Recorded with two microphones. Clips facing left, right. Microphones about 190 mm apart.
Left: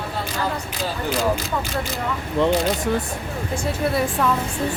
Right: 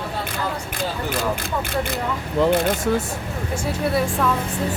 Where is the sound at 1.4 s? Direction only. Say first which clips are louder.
Right 1 dB; 55° right (ahead or behind).